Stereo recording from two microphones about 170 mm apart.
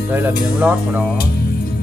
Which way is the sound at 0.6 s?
10° right (ahead or behind).